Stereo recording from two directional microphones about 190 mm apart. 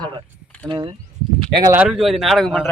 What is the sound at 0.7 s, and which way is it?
Speech, 25° right (ahead or behind).